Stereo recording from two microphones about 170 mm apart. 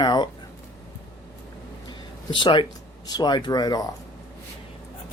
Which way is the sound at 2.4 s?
30° left (ahead or behind).